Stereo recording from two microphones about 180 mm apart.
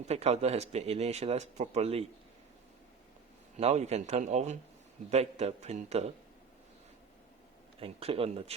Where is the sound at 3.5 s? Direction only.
35° right (ahead or behind).